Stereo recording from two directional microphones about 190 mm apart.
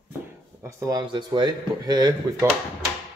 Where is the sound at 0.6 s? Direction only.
20° right (ahead or behind).